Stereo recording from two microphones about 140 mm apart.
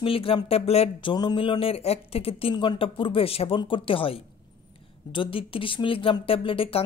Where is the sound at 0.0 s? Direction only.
40° left (ahead or behind).